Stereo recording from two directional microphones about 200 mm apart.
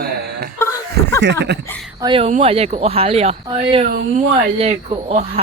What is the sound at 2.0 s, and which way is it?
Speech, 25° right (ahead or behind).